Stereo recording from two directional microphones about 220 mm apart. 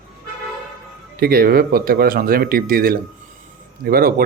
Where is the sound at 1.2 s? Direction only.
45° right (ahead or behind).